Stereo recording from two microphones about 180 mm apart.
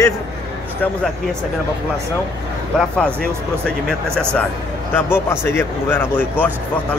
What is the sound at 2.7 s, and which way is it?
Speech, 5° left (ahead or behind).